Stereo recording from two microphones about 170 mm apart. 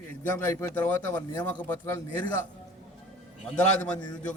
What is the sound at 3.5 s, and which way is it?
Speech, 5° left (ahead or behind).